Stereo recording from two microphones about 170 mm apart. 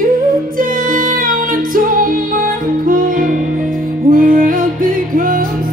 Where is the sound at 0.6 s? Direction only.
55° right (ahead or behind).